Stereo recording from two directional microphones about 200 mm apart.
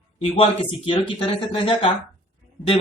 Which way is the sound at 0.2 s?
25° left (ahead or behind).